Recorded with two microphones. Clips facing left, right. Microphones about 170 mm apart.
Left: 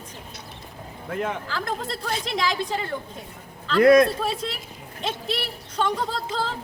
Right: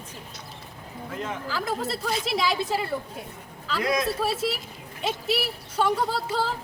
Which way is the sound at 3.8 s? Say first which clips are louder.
Left 12 dB; 60° left (ahead or behind).